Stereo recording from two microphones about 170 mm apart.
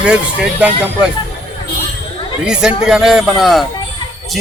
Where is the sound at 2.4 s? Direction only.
5° right (ahead or behind).